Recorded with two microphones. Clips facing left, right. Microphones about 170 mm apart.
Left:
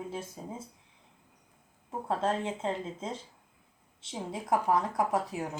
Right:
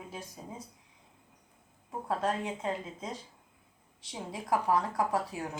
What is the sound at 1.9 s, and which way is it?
Speech, 25° left (ahead or behind).